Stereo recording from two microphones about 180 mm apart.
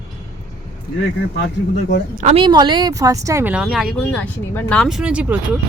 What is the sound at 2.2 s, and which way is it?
Speech, 30° right (ahead or behind).